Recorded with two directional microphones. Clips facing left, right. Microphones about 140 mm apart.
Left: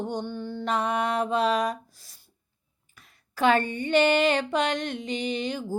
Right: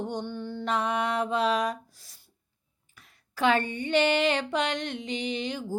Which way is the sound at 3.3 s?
45° left (ahead or behind).